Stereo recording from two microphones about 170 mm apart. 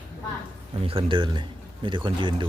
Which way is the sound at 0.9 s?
30° right (ahead or behind).